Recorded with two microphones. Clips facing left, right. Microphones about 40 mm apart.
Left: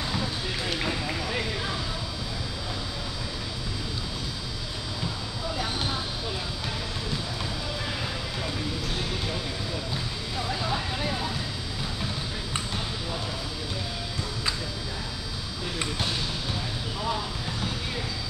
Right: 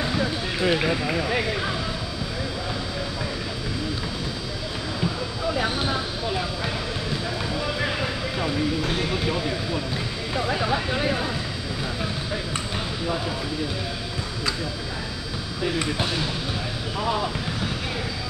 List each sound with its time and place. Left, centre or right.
0.0 s speech: right
5.6 s a sound: right
7.8 s vehicle: right
17.0 s speech: right